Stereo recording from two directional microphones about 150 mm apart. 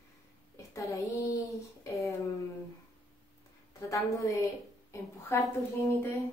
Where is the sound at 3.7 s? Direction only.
20° left (ahead or behind).